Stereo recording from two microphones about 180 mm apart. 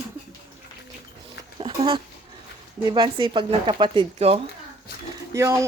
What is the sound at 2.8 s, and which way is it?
Speech, 25° right (ahead or behind).